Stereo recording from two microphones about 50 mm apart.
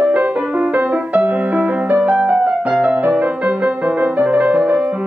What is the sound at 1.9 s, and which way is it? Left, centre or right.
Music, centre.